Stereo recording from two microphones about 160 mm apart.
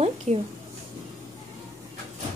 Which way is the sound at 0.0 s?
40° right (ahead or behind).